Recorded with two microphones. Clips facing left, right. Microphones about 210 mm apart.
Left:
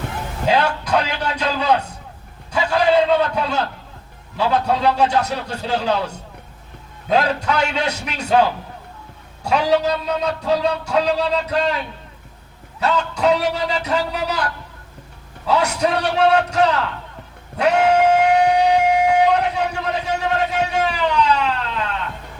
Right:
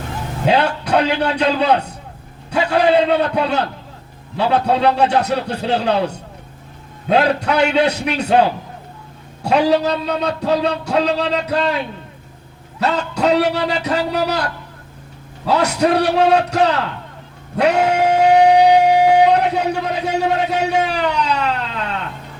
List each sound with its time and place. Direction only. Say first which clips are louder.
0.4 s a man's voice: right 2 dB; 60° right (ahead or behind)
12.8 s a man's voice: right 1 dB; 65° right (ahead or behind)
15.4 s a man's voice: right 3 dB; 65° right (ahead or behind)
17.6 s music: even; 70° right (ahead or behind)
20.7 s siren: right 2 dB; 65° right (ahead or behind)